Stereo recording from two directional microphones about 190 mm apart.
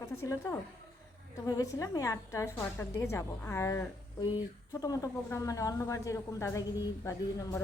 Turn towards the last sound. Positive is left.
turn(degrees=15)  # may be behind; listen again after turning